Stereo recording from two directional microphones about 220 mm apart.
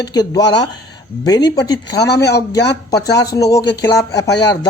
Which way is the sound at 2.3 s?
50° left (ahead or behind).